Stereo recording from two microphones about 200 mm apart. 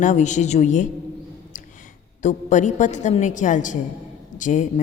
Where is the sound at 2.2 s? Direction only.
40° left (ahead or behind).